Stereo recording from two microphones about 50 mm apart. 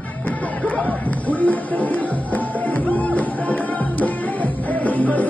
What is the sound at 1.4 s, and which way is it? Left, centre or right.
Music, left.